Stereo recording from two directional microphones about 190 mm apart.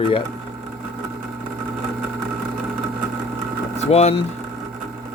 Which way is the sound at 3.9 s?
35° left (ahead or behind).